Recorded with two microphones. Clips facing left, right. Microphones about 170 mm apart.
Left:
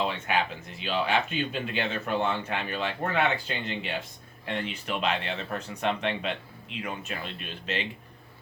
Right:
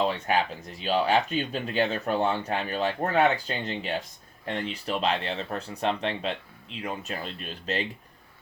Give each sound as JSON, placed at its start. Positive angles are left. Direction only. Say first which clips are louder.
{"t": 0.0, "sound": "speech", "louder": "right 3 dB", "side_deg": -40}